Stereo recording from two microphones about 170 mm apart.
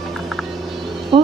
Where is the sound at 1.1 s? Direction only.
30° right (ahead or behind).